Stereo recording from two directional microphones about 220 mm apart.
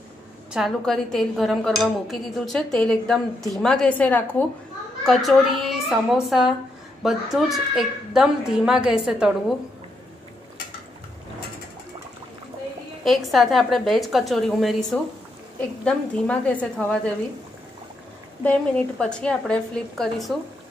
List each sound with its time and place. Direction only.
0.5 s speech: centre (ahead or behind)
13.0 s speech: centre (ahead or behind)
15.8 s speech: 5° left (ahead or behind)
18.4 s speech: 5° left (ahead or behind)